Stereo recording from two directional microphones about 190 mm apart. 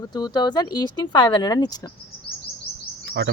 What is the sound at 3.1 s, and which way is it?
Speech, 65° right (ahead or behind).